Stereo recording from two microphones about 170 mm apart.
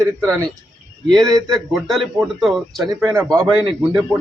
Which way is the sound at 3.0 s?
15° right (ahead or behind).